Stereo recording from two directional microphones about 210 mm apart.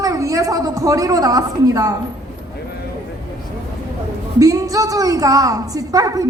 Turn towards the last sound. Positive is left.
turn(degrees=-15)  # may be behind; listen again after turning